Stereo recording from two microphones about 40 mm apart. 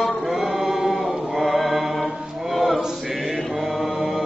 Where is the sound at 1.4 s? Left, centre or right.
Centre.